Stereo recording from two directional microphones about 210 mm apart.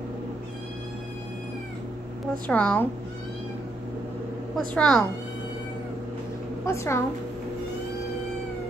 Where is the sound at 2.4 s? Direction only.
5° left (ahead or behind).